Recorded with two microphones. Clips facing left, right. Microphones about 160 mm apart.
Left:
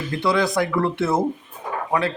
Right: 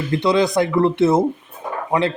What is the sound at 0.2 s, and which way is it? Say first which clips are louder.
A man's voice: right 3 dB; 20° right (ahead or behind).